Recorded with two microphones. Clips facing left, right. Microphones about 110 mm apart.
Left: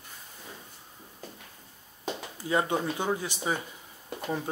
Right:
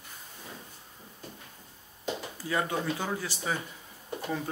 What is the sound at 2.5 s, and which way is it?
Speech, 25° left (ahead or behind).